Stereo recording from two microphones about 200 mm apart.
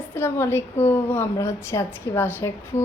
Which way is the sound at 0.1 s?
10° left (ahead or behind).